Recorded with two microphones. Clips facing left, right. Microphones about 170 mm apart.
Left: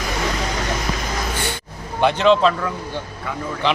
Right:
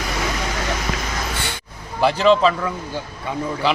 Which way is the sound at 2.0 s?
Centre (ahead or behind).